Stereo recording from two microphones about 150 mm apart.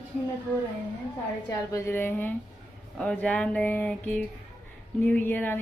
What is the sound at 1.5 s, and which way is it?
A woman's voice, 20° left (ahead or behind).